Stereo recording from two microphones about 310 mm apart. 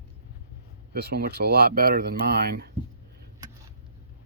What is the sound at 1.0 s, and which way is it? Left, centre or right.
Speech, right.